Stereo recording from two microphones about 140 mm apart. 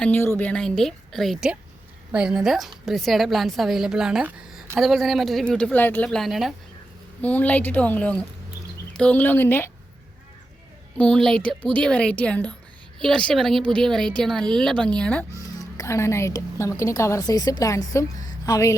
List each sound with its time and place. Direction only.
0.0 s a woman's voice: 15° left (ahead or behind)
6.1 s a woman's voice: centre (ahead or behind)
7.2 s a woman's voice: 10° left (ahead or behind)
10.9 s a woman's voice: 10° left (ahead or behind)
15.5 s a woman's voice: 20° left (ahead or behind)